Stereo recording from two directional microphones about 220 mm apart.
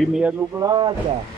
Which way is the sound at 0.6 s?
20° right (ahead or behind).